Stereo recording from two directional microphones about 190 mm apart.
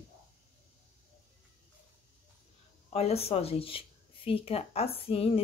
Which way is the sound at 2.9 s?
35° left (ahead or behind).